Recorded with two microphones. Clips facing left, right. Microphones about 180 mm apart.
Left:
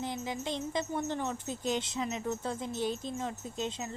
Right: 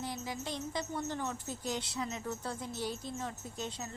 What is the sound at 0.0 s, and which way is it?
Speech, 20° left (ahead or behind).